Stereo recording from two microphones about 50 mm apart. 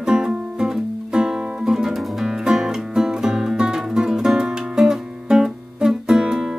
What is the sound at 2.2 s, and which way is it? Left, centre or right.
Music, centre.